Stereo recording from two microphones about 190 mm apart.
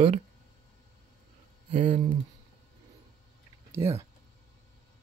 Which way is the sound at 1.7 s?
30° right (ahead or behind).